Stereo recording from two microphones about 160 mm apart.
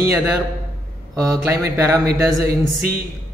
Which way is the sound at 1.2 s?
20° right (ahead or behind).